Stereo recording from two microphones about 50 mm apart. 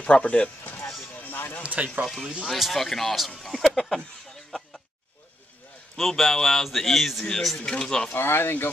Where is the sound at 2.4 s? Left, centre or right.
Centre.